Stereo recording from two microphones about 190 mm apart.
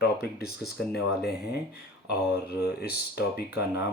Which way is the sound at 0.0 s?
55° left (ahead or behind).